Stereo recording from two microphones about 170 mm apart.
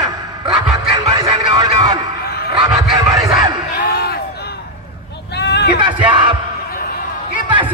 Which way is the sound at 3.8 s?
65° left (ahead or behind).